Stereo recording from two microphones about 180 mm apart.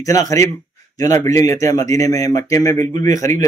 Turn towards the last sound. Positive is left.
turn(degrees=20)  # may be behind; listen again after turning